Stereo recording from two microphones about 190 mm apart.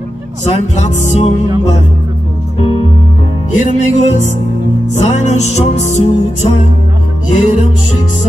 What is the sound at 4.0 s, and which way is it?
Music, 40° left (ahead or behind).